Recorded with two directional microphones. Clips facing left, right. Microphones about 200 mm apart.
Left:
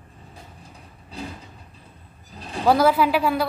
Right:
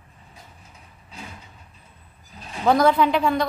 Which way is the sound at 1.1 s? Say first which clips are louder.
Left 7 dB; 35° left (ahead or behind).